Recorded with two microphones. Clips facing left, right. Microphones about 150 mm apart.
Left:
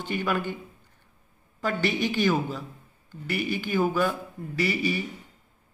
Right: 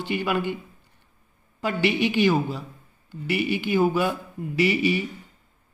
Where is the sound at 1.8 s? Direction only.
40° left (ahead or behind).